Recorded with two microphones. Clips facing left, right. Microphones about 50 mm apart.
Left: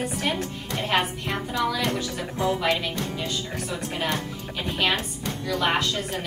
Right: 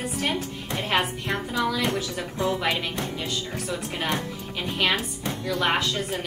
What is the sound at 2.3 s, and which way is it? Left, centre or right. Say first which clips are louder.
Speech: left 1 dB; left.